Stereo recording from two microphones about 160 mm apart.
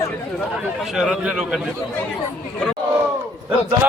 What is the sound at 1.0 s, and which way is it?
Speech, 5° right (ahead or behind).